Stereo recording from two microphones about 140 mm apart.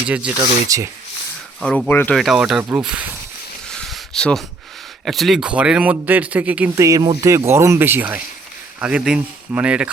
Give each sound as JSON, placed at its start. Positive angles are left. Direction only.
{"t": 0.0, "sound": "speech", "side_deg": -10}
{"t": 0.7, "sound": "speech", "side_deg": -25}
{"t": 1.6, "sound": "speech", "side_deg": 10}
{"t": 2.1, "sound": "speech", "side_deg": -5}
{"t": 3.7, "sound": "a sound", "side_deg": 5}
{"t": 5.0, "sound": "speech", "side_deg": 0}
{"t": 6.7, "sound": "speech", "side_deg": -25}